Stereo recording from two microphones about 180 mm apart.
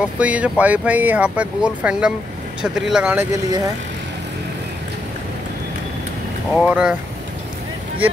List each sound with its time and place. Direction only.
0.0 s speech: 5° right (ahead or behind)
3.3 s speech: 20° right (ahead or behind)
6.5 s speech: 5° right (ahead or behind)